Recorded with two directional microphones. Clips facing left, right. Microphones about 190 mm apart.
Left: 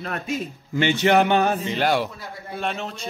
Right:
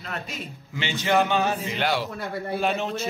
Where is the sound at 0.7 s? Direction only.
60° left (ahead or behind).